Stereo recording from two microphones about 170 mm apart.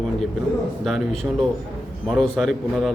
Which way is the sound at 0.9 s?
Centre (ahead or behind).